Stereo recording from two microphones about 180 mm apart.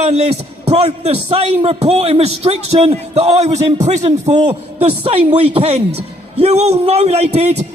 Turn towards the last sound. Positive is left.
turn(degrees=-35)  # may be behind; listen again after turning